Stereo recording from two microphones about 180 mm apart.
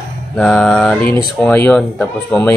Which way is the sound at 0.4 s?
5° left (ahead or behind).